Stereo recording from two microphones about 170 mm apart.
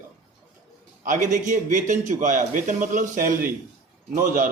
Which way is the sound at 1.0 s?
50° right (ahead or behind).